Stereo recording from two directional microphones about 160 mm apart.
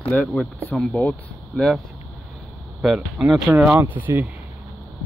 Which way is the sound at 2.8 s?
5° right (ahead or behind).